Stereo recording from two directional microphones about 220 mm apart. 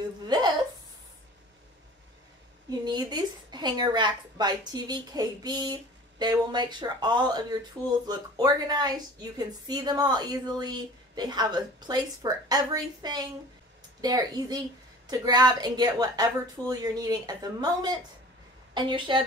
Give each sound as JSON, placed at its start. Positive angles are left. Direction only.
{"t": 2.8, "sound": "a woman's voice", "side_deg": -20}